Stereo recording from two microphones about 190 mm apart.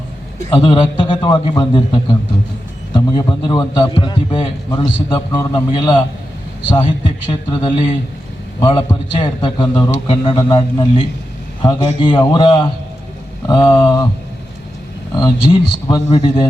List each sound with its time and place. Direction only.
0.5 s a man's voice: 25° left (ahead or behind)
9.1 s a man's voice: 25° left (ahead or behind)
15.1 s a man's voice: 25° left (ahead or behind)